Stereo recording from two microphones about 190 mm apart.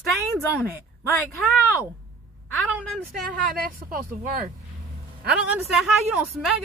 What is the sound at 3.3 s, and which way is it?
Speech, 50° right (ahead or behind).